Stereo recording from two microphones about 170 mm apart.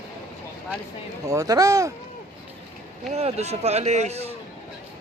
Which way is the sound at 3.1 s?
40° right (ahead or behind).